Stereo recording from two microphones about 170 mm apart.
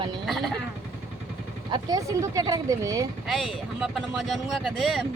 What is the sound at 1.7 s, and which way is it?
Speech, 20° right (ahead or behind).